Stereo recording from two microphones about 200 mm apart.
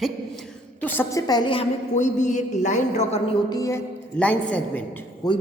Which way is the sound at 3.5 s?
15° left (ahead or behind).